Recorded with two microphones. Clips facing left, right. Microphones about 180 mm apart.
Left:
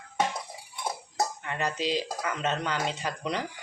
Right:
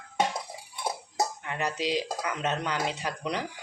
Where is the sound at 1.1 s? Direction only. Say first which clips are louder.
Left 1 dB; 10° right (ahead or behind).